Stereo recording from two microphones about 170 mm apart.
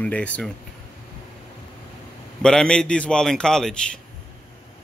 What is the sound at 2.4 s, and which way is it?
A man's voice, 5° left (ahead or behind).